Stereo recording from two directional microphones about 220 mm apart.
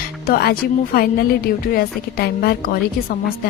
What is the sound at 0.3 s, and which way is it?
Speech, 45° left (ahead or behind).